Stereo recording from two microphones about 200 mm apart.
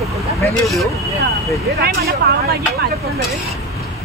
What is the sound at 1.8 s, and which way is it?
Speech, 50° right (ahead or behind).